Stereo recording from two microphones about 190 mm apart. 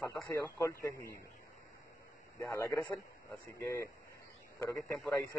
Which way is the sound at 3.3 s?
15° left (ahead or behind).